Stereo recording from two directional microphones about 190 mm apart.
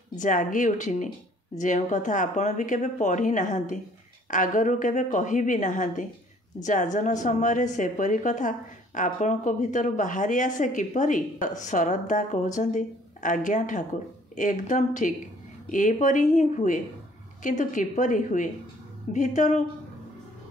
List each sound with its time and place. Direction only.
0.2 s a woman's voice: 45° left (ahead or behind)